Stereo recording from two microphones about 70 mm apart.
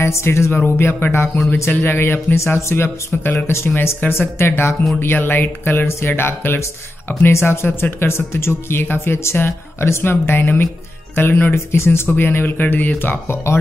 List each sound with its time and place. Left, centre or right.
0.0 s speech: left
11.5 s speech: left